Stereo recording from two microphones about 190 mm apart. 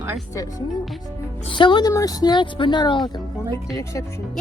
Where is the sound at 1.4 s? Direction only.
25° left (ahead or behind).